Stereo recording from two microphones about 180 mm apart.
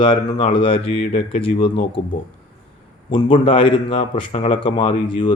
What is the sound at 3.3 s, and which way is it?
Speech, 30° left (ahead or behind).